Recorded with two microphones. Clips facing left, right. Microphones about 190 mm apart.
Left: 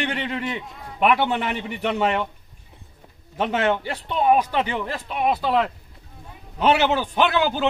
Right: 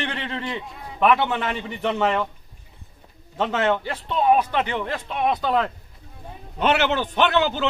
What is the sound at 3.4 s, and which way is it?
A man's voice, 15° left (ahead or behind).